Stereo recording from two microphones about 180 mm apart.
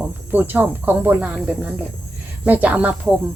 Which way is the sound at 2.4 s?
10° right (ahead or behind).